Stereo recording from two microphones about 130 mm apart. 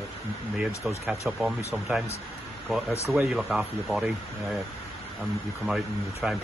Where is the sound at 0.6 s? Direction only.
5° right (ahead or behind).